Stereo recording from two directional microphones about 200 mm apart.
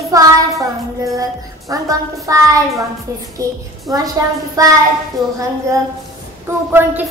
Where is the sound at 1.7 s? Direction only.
15° right (ahead or behind).